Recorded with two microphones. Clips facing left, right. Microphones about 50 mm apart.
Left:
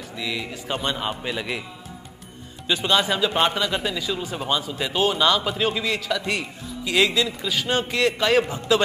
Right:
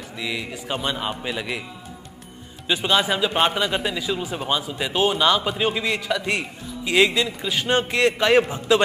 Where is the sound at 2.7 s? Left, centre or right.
Centre.